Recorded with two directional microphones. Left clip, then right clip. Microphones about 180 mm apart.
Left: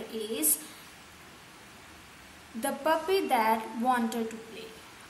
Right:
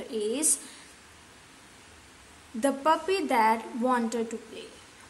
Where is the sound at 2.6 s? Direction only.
25° right (ahead or behind).